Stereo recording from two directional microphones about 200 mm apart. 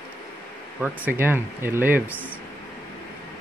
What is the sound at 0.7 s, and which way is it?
Speech, 5° right (ahead or behind).